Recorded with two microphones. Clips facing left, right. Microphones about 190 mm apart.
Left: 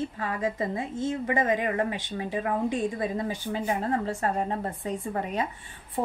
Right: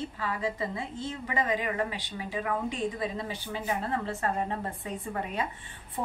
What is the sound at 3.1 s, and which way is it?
A woman's voice, 45° left (ahead or behind).